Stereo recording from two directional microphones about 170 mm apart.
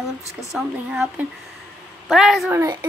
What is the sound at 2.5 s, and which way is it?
Speech, 15° right (ahead or behind).